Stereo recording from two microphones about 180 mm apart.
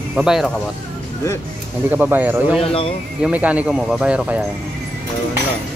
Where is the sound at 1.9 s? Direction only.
10° right (ahead or behind).